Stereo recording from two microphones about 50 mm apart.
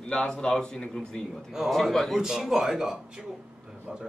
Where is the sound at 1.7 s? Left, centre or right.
Centre.